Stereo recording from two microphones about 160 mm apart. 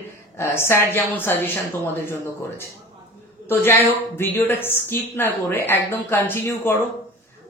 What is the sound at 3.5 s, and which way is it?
Speech, 15° left (ahead or behind).